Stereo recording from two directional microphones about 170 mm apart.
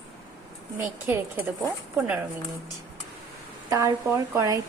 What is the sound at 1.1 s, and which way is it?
Speech, 15° right (ahead or behind).